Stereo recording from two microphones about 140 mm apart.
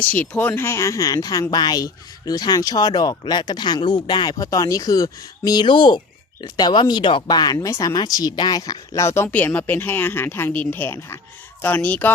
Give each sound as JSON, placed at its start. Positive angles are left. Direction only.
{"t": 0.0, "sound": "speech", "side_deg": 10}